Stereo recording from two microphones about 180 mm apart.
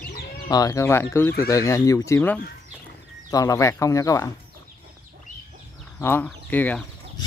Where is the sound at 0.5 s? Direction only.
20° left (ahead or behind).